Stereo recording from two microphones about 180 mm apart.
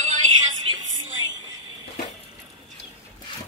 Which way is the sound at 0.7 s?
90° right.